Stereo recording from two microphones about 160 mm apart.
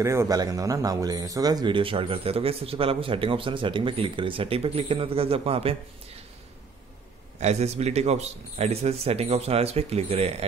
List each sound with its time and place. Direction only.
0.0 s speech: 20° right (ahead or behind); by 5.8 s 35° right (ahead or behind)
7.3 s speech: 45° right (ahead or behind)